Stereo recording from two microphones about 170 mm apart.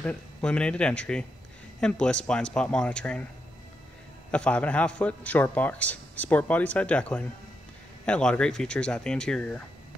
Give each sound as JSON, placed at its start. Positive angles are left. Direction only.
{"t": 0.0, "sound": "a man's voice", "side_deg": 5}
{"t": 4.3, "sound": "a man's voice", "side_deg": 5}